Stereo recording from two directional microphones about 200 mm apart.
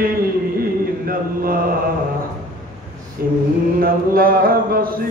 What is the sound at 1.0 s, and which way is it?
Mantra, 45° right (ahead or behind).